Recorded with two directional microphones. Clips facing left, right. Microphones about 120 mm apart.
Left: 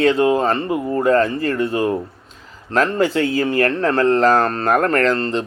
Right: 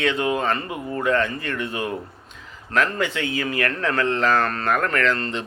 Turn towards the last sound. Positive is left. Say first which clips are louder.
# left 5 dB
turn(degrees=35)  # may be behind; listen again after turning